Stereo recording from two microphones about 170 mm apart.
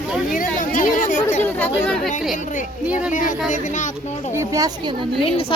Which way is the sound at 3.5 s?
45° left (ahead or behind).